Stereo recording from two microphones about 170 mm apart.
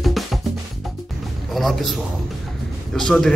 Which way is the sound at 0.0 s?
Centre (ahead or behind).